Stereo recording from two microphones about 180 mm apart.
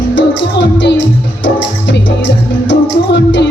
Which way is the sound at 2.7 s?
80° left.